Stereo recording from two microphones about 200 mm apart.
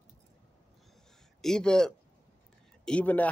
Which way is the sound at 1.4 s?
5° left (ahead or behind).